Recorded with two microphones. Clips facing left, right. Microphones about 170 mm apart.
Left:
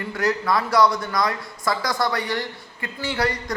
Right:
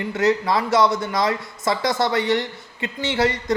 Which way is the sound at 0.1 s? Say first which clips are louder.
Right 3 dB; 25° right (ahead or behind).